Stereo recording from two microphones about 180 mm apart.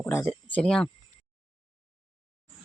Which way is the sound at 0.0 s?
15° left (ahead or behind).